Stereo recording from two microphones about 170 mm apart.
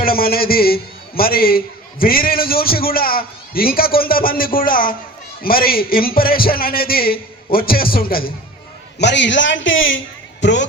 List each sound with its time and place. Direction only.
0.0 s a man's voice: 60° left (ahead or behind)
9.0 s a man's voice: 90° left